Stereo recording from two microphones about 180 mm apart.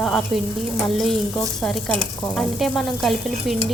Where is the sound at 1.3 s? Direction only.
5° left (ahead or behind).